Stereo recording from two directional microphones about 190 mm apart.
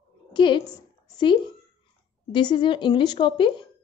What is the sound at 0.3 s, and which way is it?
A woman's voice, 25° left (ahead or behind).